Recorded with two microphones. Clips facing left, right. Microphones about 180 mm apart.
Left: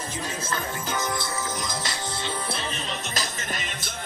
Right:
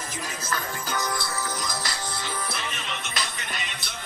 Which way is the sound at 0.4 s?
25° left (ahead or behind).